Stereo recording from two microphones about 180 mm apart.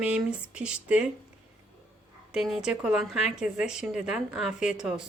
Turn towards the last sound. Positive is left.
turn(degrees=-5)  # may be behind; listen again after turning